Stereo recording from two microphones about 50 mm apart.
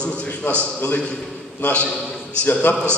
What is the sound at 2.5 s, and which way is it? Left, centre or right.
Speech, left.